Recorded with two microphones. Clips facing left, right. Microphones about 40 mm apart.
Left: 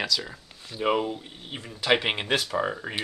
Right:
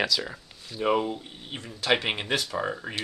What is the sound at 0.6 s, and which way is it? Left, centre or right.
Speech, centre.